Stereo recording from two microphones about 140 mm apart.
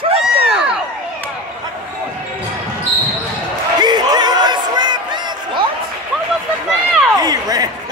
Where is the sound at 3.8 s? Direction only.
30° right (ahead or behind).